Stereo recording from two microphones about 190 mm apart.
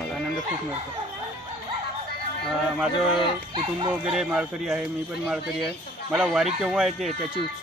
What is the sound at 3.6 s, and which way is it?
Speech, 30° right (ahead or behind).